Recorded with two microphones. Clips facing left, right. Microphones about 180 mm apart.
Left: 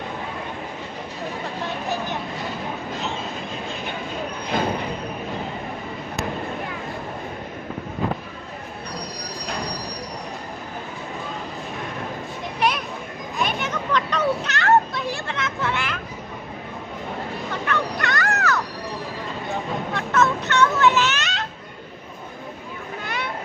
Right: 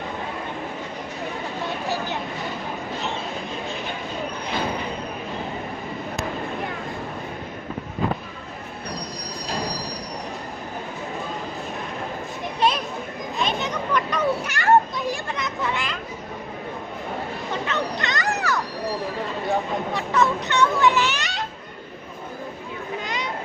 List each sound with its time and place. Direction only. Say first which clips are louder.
12.5 s children playing: right 1 dB; 25° right (ahead or behind)
17.7 s dog: left 4 dB; 20° right (ahead or behind)
19.9 s a sound: left 1 dB; 15° right (ahead or behind)